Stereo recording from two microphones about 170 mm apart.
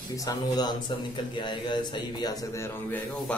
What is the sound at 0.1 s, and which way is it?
A man's voice, 20° left (ahead or behind).